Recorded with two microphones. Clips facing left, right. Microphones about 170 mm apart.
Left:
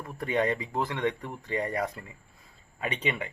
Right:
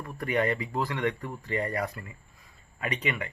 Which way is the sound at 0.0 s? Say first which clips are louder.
Even; 20° left (ahead or behind).